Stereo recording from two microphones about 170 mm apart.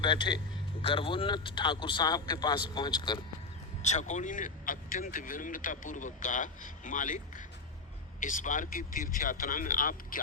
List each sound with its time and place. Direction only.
0.0 s speech: 25° left (ahead or behind)
3.8 s speech: 45° left (ahead or behind)